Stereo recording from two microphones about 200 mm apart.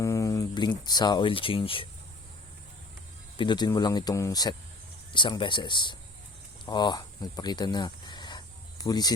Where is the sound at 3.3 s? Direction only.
25° left (ahead or behind).